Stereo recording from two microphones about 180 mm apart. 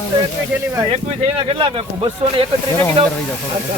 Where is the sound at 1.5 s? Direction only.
30° right (ahead or behind).